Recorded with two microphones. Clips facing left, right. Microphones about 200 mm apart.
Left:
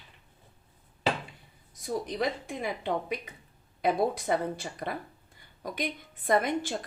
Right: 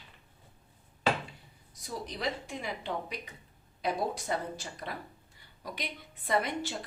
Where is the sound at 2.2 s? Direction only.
55° left (ahead or behind).